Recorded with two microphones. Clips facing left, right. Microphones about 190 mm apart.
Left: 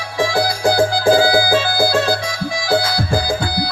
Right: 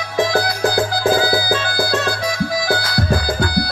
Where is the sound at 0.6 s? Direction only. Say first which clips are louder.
Left 5 dB; 30° left (ahead or behind).